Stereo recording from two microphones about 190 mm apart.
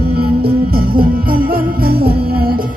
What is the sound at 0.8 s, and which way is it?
Music, 50° right (ahead or behind).